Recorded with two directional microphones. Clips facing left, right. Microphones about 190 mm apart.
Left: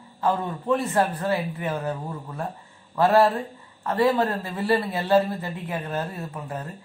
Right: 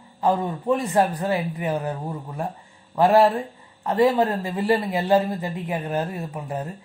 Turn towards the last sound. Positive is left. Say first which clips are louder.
# right 3 dB
turn(degrees=-15)  # may be behind; listen again after turning